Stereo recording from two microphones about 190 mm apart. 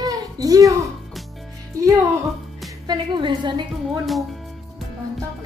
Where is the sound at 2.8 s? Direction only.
25° right (ahead or behind).